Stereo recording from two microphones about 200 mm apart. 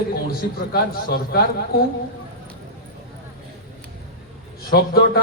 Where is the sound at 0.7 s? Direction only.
50° left (ahead or behind).